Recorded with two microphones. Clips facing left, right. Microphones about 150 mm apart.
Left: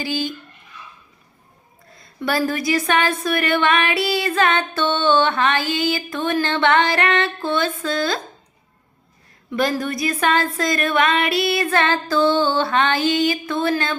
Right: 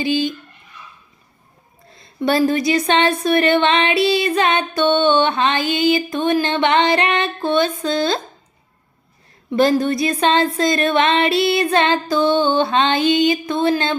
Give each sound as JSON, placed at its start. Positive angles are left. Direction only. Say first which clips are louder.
{"t": 0.0, "sound": "speech", "louder": "right 5 dB", "side_deg": -20}
{"t": 2.0, "sound": "speech", "louder": "right 5 dB", "side_deg": -25}
{"t": 9.5, "sound": "speech", "louder": "right 6 dB", "side_deg": -25}